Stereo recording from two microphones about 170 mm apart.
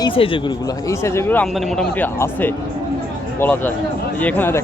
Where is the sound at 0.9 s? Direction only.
15° left (ahead or behind).